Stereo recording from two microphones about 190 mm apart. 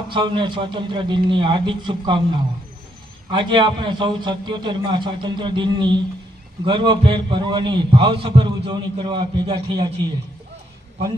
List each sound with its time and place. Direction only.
0.1 s a man's voice: 25° right (ahead or behind)
3.3 s a man's voice: 25° right (ahead or behind)